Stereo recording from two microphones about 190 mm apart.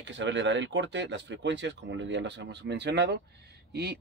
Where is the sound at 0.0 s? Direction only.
70° right (ahead or behind).